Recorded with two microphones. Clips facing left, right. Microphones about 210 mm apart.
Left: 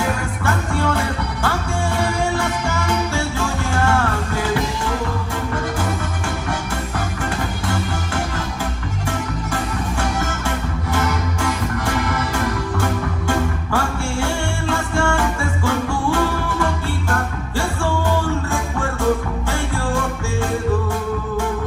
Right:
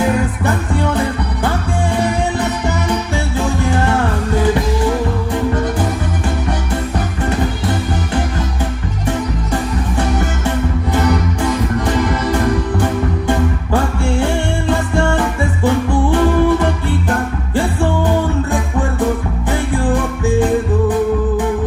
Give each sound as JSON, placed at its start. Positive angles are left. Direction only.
{"t": 0.7, "sound": "music", "side_deg": -20}
{"t": 14.1, "sound": "music", "side_deg": -20}
{"t": 18.5, "sound": "music", "side_deg": -15}